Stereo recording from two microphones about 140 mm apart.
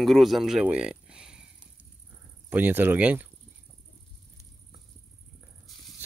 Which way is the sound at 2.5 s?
15° right (ahead or behind).